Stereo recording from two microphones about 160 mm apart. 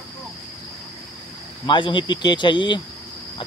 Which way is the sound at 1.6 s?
30° left (ahead or behind).